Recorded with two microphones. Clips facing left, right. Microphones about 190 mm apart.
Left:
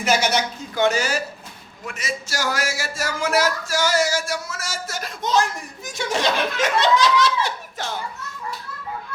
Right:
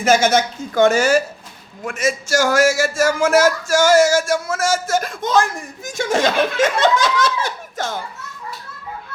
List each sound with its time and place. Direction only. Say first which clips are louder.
0.0 s a man's voice: right 6 dB; 45° right (ahead or behind)